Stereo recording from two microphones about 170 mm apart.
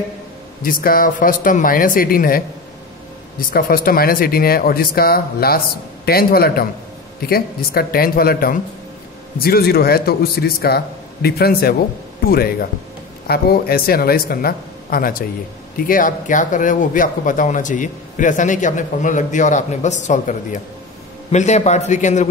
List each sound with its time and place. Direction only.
0.6 s speech: 55° left (ahead or behind)